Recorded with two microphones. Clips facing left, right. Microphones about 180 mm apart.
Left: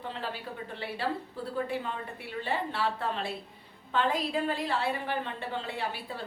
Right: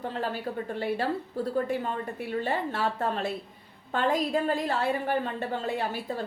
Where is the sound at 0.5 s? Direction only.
45° right (ahead or behind).